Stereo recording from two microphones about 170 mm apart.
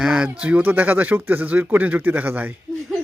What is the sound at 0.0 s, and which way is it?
Speech, 5° right (ahead or behind).